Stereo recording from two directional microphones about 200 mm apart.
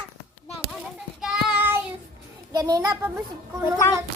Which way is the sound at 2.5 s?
20° right (ahead or behind).